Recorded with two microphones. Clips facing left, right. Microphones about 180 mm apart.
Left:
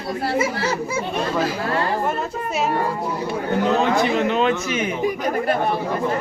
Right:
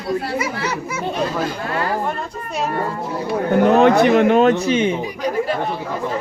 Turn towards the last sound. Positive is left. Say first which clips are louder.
# right 6 dB
turn(degrees=-30)  # may be behind; listen again after turning